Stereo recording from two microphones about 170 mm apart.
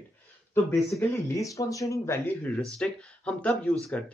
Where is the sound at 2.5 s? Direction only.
5° left (ahead or behind).